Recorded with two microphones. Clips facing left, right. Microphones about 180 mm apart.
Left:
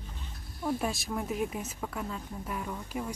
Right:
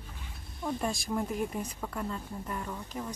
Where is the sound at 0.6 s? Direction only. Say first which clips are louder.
Left 1 dB; 5° left (ahead or behind).